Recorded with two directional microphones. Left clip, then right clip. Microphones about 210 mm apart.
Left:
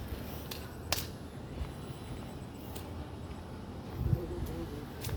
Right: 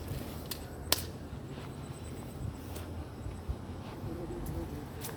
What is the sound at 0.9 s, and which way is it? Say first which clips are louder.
Whip: right 3 dB; 50° right (ahead or behind).